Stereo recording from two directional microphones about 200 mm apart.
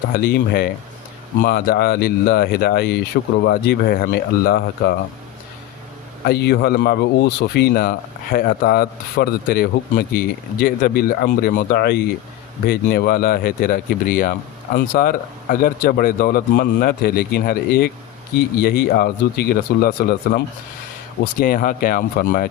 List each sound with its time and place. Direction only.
0.1 s speech: 50° left (ahead or behind)
6.2 s speech: 55° left (ahead or behind)
21.4 s speech: 45° left (ahead or behind)